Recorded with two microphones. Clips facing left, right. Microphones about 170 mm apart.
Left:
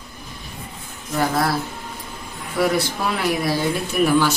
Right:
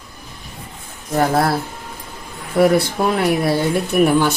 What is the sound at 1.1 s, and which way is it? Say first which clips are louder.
Speech: right 4 dB; 50° right (ahead or behind).